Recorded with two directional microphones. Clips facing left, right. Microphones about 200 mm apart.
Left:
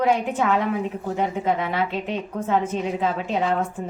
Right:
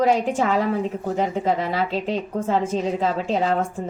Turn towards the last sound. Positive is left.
turn(degrees=-35)  # may be behind; listen again after turning